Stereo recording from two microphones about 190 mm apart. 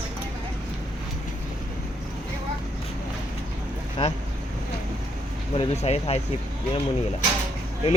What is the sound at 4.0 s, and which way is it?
Speech, 25° left (ahead or behind).